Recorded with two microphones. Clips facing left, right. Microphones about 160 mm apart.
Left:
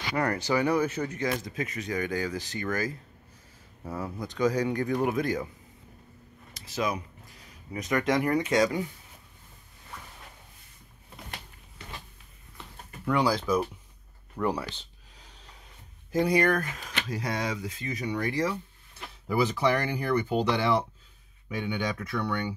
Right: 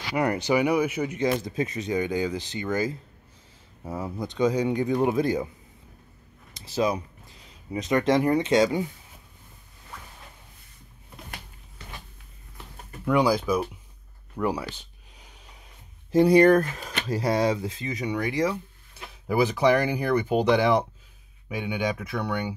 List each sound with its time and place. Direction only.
0.1 s speech: 15° right (ahead or behind)
6.5 s speech: 30° right (ahead or behind)
13.0 s speech: 10° right (ahead or behind)
14.3 s a sound: 10° right (ahead or behind)
16.1 s speech: 30° right (ahead or behind); by 22.5 s 15° right (ahead or behind)